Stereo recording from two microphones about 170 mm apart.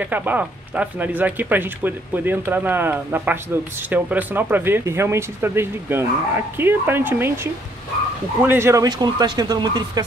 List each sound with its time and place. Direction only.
0.0 s speech: 10° right (ahead or behind)